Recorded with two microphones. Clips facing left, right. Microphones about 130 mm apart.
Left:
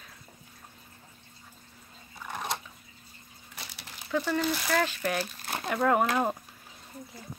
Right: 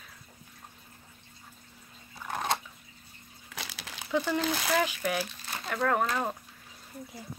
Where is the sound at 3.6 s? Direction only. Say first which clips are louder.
Right 4 dB; 90° right.